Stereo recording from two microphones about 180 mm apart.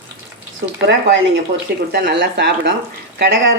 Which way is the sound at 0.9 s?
75° right (ahead or behind).